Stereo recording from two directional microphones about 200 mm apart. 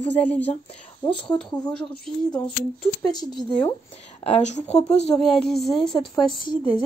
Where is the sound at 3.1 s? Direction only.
20° left (ahead or behind).